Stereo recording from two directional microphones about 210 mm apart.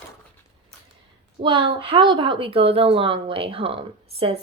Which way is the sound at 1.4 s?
25° right (ahead or behind).